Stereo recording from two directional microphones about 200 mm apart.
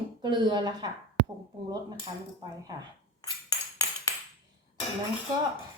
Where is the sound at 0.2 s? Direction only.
20° right (ahead or behind).